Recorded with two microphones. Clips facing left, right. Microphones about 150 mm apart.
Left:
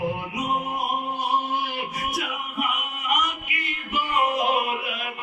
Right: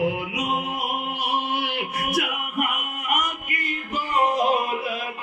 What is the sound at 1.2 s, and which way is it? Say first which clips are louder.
Music: even; 80° right.